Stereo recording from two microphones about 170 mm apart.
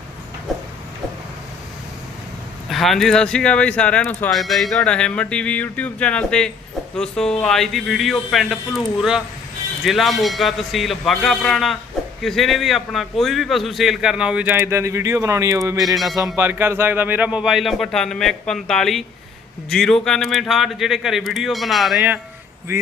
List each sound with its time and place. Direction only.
2.6 s speech: centre (ahead or behind); by 22.8 s 15° right (ahead or behind)